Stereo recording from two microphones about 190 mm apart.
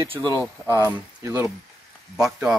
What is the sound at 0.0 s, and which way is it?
Speech, 25° right (ahead or behind).